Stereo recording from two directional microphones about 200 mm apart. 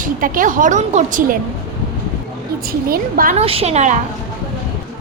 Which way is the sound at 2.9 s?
45° right (ahead or behind).